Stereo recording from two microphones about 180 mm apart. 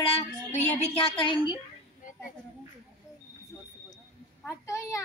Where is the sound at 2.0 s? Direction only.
50° left (ahead or behind).